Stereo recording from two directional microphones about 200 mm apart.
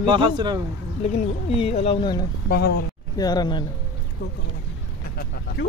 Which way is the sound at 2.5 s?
55° left (ahead or behind).